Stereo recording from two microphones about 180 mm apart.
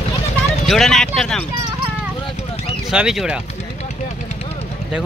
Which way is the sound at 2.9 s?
5° right (ahead or behind).